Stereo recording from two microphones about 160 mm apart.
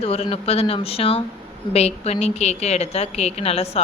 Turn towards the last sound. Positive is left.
turn(degrees=40)  # may be behind; listen again after turning